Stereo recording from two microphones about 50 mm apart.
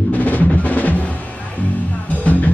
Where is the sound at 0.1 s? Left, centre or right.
Left.